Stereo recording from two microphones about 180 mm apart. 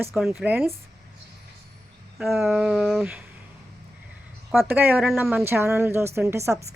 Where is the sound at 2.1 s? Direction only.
Centre (ahead or behind).